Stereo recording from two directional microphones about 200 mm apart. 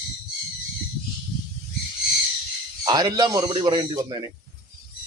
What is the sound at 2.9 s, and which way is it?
A man's voice, 20° right (ahead or behind).